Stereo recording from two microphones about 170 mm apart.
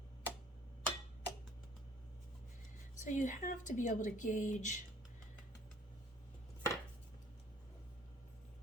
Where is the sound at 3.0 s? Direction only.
50° left (ahead or behind).